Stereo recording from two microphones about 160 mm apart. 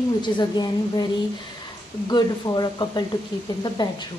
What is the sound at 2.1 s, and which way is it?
A woman's voice, 25° left (ahead or behind).